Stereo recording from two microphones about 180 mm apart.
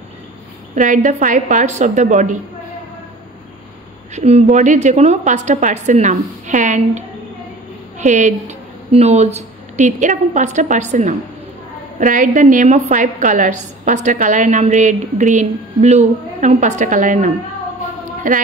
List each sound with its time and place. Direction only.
0.7 s a woman's voice: 45° right (ahead or behind)
4.1 s a woman's voice: 35° right (ahead or behind)
8.0 s a woman's voice: 40° right (ahead or behind)
18.0 s a sound: 45° right (ahead or behind)